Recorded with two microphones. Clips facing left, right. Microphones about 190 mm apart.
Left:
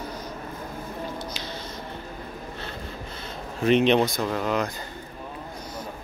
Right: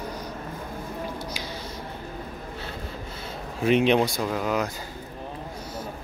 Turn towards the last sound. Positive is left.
turn(degrees=-5)  # may be behind; listen again after turning